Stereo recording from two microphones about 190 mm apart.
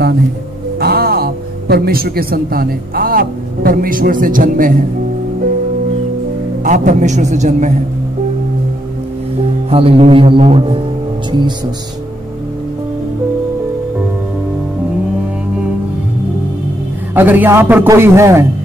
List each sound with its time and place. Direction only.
0.7 s a man's voice: 55° right (ahead or behind)
6.6 s a man's voice: 40° right (ahead or behind)
9.7 s speech: 30° right (ahead or behind)
17.1 s a man's voice: 10° right (ahead or behind)